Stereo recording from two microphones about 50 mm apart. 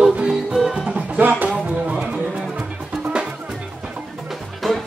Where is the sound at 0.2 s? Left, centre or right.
Centre.